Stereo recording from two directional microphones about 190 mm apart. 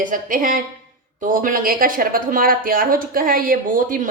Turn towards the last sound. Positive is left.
turn(degrees=-45)  # may be behind; listen again after turning